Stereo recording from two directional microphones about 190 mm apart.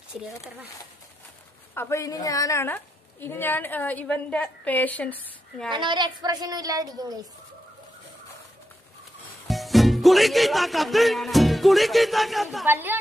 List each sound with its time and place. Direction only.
0.1 s speech: 5° right (ahead or behind)
1.7 s a woman's voice: 15° left (ahead or behind)
5.7 s speech: 25° right (ahead or behind)
9.5 s music: centre (ahead or behind)